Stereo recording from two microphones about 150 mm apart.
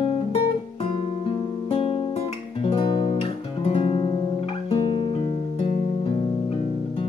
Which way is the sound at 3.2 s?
40° left (ahead or behind).